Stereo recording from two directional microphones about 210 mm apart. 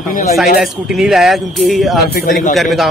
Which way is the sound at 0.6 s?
Centre (ahead or behind).